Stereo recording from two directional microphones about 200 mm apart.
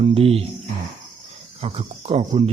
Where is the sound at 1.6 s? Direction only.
30° right (ahead or behind).